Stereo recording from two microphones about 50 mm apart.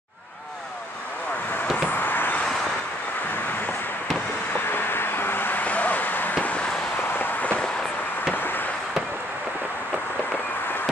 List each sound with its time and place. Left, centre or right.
1.9 s vehicle: left
4.6 s vehicle: left
6.3 s vehicle: left
8.3 s a sound: left